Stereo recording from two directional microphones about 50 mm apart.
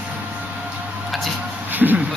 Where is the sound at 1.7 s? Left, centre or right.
Right.